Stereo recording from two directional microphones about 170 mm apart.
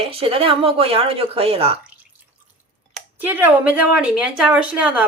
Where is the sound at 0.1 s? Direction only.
35° right (ahead or behind).